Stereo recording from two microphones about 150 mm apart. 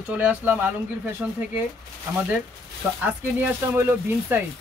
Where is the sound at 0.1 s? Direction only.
10° right (ahead or behind).